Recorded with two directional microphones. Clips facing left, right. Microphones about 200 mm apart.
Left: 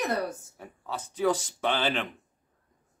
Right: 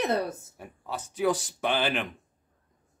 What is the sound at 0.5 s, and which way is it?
Speech, 10° right (ahead or behind).